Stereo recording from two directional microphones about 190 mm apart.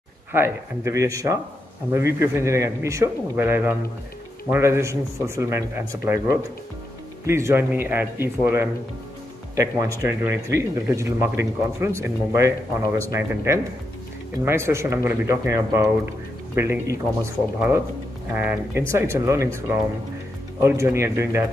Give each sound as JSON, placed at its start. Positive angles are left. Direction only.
{"t": 0.3, "sound": "speech", "side_deg": -15}
{"t": 7.2, "sound": "speech", "side_deg": -15}